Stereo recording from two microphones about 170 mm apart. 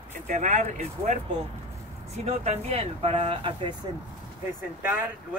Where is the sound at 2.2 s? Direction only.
40° right (ahead or behind).